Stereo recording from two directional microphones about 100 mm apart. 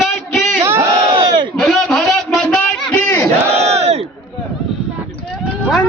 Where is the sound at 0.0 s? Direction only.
Centre (ahead or behind).